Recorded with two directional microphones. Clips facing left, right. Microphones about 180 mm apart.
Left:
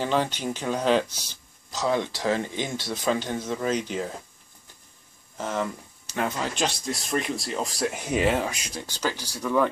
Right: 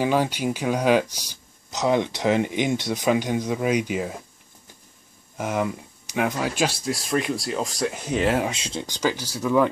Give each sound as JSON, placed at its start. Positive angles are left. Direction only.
{"t": 0.0, "sound": "speech", "side_deg": -10}
{"t": 5.4, "sound": "speech", "side_deg": -10}
{"t": 8.5, "sound": "speech", "side_deg": -25}
{"t": 8.8, "sound": "speech", "side_deg": -15}